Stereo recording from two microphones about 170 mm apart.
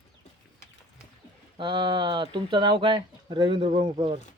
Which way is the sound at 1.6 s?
30° right (ahead or behind).